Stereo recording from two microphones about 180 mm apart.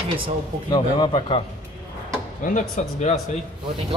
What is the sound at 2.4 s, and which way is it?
Speech, 45° left (ahead or behind).